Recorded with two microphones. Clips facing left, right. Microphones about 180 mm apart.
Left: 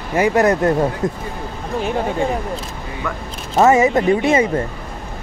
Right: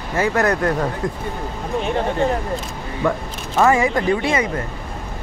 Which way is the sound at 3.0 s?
30° right (ahead or behind).